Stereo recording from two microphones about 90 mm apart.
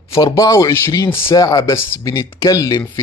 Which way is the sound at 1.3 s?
40° left (ahead or behind).